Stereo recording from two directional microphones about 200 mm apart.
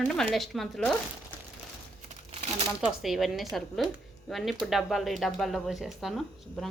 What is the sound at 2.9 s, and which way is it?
Speech, centre (ahead or behind).